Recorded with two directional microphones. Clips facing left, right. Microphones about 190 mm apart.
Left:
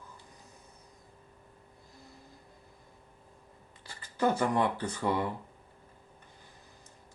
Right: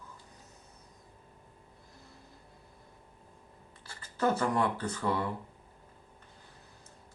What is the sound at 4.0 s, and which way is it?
Speech, 15° left (ahead or behind).